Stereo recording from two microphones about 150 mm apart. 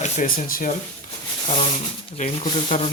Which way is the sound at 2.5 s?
40° left (ahead or behind).